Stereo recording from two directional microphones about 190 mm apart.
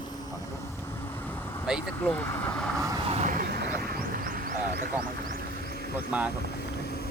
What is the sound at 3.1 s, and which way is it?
Vehicle, 40° right (ahead or behind).